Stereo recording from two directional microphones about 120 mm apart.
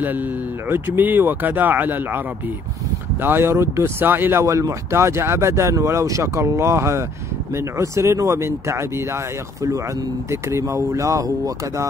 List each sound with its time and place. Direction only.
0.0 s speech: 15° right (ahead or behind)